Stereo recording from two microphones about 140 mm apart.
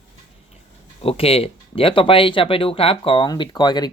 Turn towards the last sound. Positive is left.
turn(degrees=30)  # may be behind; listen again after turning